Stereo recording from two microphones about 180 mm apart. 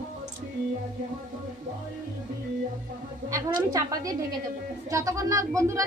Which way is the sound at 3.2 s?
20° right (ahead or behind).